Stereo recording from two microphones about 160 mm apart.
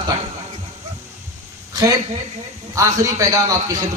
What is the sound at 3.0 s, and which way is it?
Speech, 20° right (ahead or behind).